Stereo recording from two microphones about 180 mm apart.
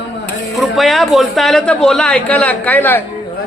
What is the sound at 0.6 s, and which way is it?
Speech, centre (ahead or behind).